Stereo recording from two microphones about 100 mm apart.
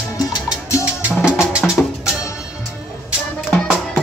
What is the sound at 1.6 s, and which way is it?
Music, 10° left (ahead or behind).